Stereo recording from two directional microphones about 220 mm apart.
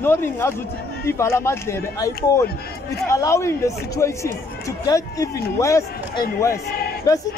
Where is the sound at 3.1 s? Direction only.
15° left (ahead or behind).